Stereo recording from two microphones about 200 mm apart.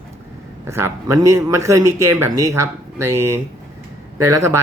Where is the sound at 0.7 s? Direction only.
15° right (ahead or behind).